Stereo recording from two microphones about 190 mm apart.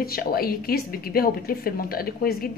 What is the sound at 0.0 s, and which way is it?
A woman's voice, 50° left (ahead or behind).